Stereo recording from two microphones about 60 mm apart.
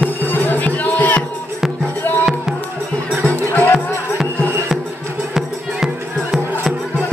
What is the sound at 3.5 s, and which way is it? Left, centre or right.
Music, left.